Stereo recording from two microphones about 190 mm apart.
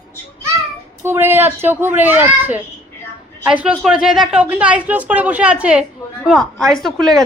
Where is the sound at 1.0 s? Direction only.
10° right (ahead or behind).